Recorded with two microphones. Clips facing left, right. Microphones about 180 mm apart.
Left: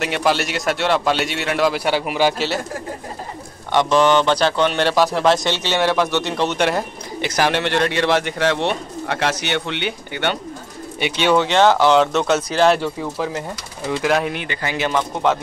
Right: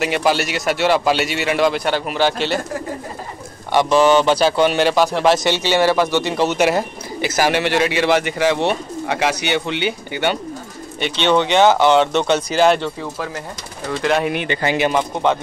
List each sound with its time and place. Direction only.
0.0 s speech: centre (ahead or behind)
3.7 s speech: 5° right (ahead or behind)
11.0 s speech: 10° left (ahead or behind)
12.8 s speech: 15° left (ahead or behind)
14.3 s speech: 20° right (ahead or behind)